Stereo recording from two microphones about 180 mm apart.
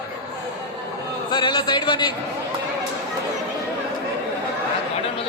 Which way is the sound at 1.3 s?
25° left (ahead or behind).